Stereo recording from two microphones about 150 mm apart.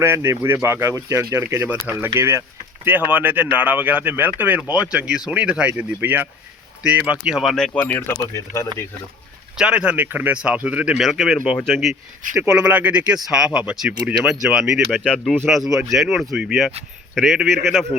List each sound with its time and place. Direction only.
0.0 s speech: 15° right (ahead or behind); by 8.6 s 20° left (ahead or behind)
9.6 s speech: 5° right (ahead or behind)